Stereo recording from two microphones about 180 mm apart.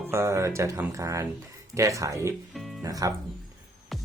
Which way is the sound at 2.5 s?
Centre (ahead or behind).